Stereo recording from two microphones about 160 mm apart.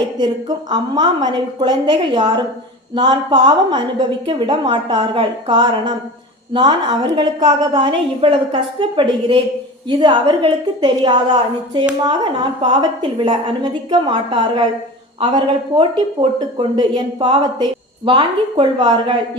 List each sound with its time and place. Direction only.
0.2 s a woman's voice: 30° right (ahead or behind)